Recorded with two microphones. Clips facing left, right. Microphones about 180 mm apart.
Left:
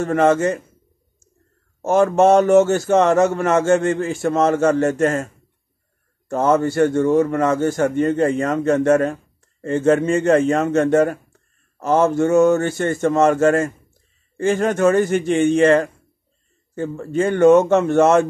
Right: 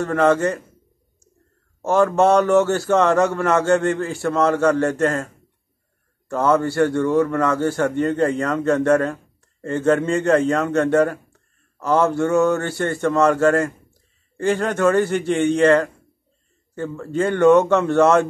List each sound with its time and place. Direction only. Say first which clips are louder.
0.0 s a man's voice: left 1 dB; 20° left (ahead or behind)
1.8 s a man's voice: left 2 dB; 20° left (ahead or behind)